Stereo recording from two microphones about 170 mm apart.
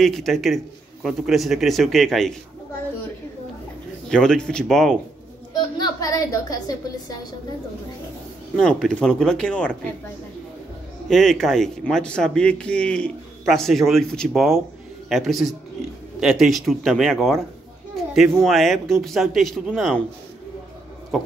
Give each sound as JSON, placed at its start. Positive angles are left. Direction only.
{"t": 0.0, "sound": "speech", "side_deg": 0}
{"t": 4.1, "sound": "speech", "side_deg": 5}
{"t": 5.5, "sound": "a woman's voice", "side_deg": 20}
{"t": 8.5, "sound": "speech", "side_deg": 5}
{"t": 11.1, "sound": "speech", "side_deg": 0}
{"t": 21.1, "sound": "speech", "side_deg": 0}